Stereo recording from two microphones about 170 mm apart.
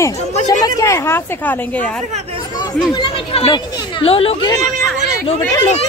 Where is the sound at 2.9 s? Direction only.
30° left (ahead or behind).